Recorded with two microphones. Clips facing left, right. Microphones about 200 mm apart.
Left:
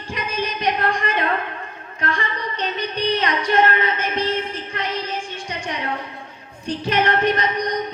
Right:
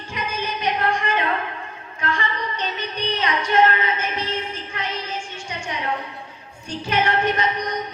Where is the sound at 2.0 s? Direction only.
35° left (ahead or behind).